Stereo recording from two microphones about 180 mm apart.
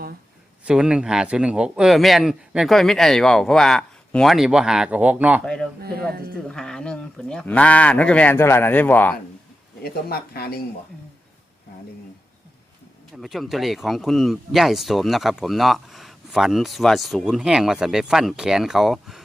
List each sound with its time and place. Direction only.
0.6 s speech: 5° right (ahead or behind)
6.3 s speech: 5° left (ahead or behind)
9.8 s speech: 60° left (ahead or behind)
13.2 s speech: centre (ahead or behind)